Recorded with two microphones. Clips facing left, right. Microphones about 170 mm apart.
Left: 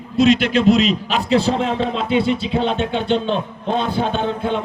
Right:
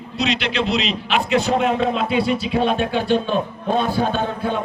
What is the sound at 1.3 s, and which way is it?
Music, 30° left (ahead or behind).